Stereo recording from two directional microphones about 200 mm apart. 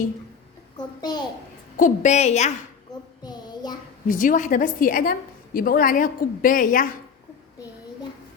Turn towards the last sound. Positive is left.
turn(degrees=45)  # may be behind; listen again after turning